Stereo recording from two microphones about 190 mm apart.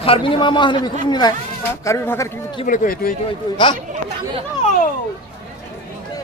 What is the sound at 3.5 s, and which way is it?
Speech, 25° left (ahead or behind).